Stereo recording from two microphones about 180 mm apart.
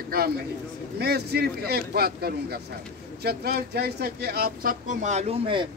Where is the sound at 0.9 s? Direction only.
60° right (ahead or behind); by 5.7 s 30° right (ahead or behind).